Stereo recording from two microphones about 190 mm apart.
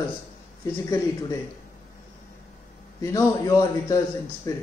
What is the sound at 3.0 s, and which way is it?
A man's voice, 15° left (ahead or behind).